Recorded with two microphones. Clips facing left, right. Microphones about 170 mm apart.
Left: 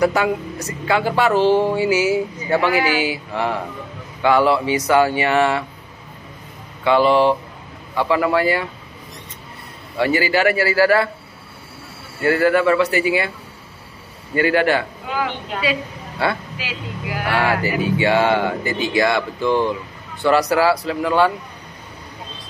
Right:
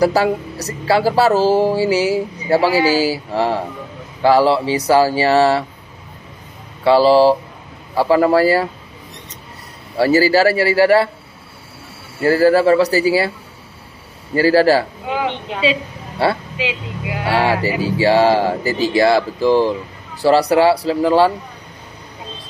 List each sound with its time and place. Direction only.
0.0 s speech: 35° right (ahead or behind)
6.8 s speech: 35° right (ahead or behind)
9.9 s speech: 35° right (ahead or behind)
12.2 s speech: 35° right (ahead or behind)
14.3 s speech: 35° right (ahead or behind)
15.1 s speech: 20° right (ahead or behind)